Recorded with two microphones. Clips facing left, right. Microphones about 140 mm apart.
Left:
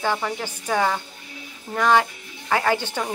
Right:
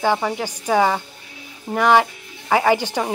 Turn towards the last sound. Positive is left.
turn(degrees=-15)  # may be behind; listen again after turning